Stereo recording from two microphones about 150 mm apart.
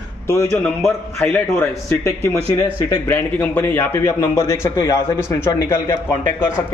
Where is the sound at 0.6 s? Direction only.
10° left (ahead or behind).